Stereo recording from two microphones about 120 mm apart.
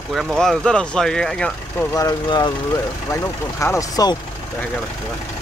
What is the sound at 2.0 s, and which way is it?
Speech, 35° left (ahead or behind).